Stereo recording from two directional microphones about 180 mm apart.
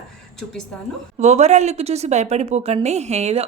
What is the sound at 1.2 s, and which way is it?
A woman's voice, 40° right (ahead or behind).